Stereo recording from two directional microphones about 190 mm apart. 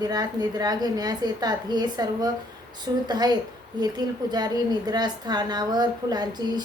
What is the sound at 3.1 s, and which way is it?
A woman's voice, 20° right (ahead or behind).